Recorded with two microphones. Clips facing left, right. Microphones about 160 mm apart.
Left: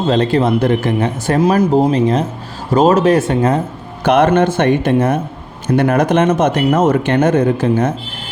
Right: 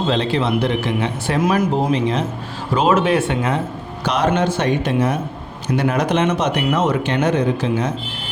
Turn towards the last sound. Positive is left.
turn(degrees=50)  # may be behind; listen again after turning